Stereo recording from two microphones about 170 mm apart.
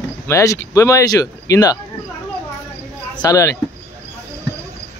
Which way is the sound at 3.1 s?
20° left (ahead or behind).